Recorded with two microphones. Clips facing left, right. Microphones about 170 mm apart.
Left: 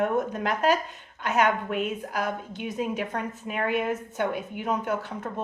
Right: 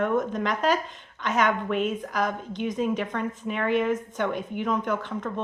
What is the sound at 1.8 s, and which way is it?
A woman's voice, 5° left (ahead or behind).